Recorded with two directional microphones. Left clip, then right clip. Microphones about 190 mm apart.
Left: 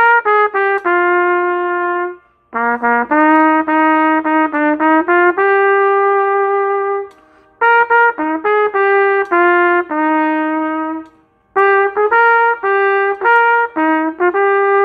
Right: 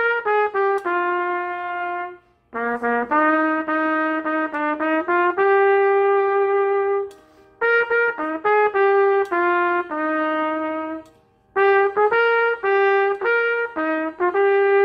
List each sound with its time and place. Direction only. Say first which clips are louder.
0.0 s trumpet: left 9 dB; 40° left (ahead or behind)
2.5 s brass instrument: left 8 dB; 40° left (ahead or behind)
7.6 s trumpet: left 8 dB; 45° left (ahead or behind)